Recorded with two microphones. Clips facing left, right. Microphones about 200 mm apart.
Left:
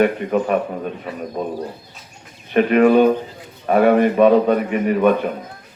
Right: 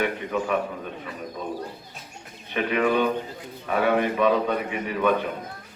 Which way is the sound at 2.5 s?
55° left (ahead or behind).